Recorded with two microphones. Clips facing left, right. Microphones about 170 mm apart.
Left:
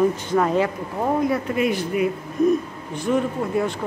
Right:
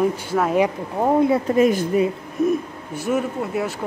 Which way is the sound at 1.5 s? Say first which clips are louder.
Right 5 dB; 40° right (ahead or behind).